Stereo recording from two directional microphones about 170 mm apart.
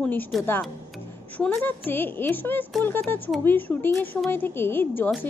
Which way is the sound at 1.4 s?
10° left (ahead or behind).